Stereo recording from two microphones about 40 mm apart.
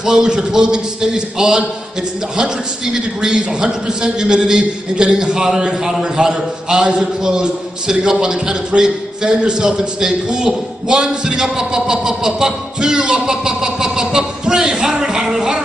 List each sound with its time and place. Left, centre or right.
0.0 s a man's voice: centre